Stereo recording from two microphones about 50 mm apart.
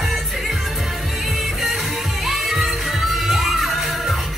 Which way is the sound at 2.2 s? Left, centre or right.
Centre.